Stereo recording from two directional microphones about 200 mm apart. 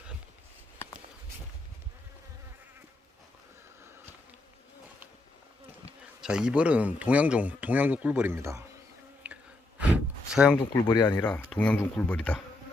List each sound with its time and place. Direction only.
6.2 s speech: 5° right (ahead or behind)
9.2 s a sound: 5° right (ahead or behind)
10.6 s speech: 20° left (ahead or behind)
11.2 s speech: 5° left (ahead or behind)